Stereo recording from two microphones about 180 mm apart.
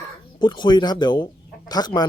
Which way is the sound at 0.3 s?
25° left (ahead or behind).